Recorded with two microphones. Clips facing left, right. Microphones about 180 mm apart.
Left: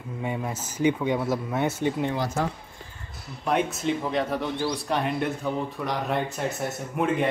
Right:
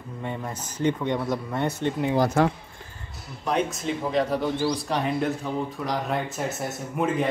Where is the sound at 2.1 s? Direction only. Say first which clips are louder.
Right 6 dB; 65° right (ahead or behind).